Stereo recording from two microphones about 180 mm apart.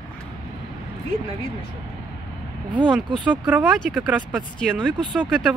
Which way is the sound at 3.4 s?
5° right (ahead or behind).